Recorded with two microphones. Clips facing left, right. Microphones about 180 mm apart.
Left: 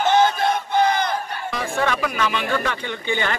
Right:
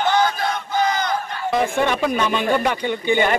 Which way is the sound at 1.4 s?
20° right (ahead or behind).